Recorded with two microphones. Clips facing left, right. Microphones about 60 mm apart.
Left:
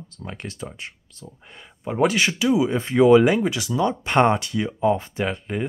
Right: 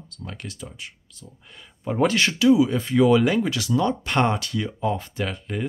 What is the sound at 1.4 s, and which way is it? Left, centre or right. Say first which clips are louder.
Speech: left 2 dB; left.